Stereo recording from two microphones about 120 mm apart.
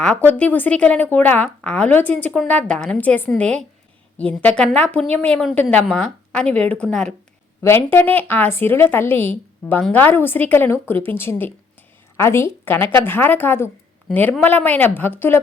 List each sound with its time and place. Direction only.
0.3 s a woman's voice: 10° left (ahead or behind)
7.9 s a woman's voice: 15° left (ahead or behind)